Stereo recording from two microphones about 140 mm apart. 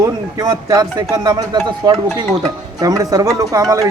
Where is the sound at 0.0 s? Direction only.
30° right (ahead or behind).